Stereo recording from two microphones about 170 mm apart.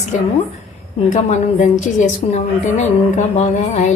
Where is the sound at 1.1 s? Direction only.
45° left (ahead or behind).